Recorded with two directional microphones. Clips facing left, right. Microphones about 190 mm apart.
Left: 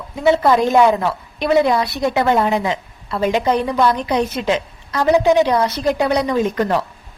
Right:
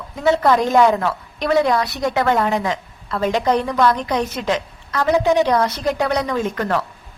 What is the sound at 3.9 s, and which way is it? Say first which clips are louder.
A woman's voice: left 2 dB; 20° left (ahead or behind).